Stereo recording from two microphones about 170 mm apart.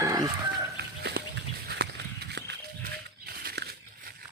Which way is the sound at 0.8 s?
75° right (ahead or behind).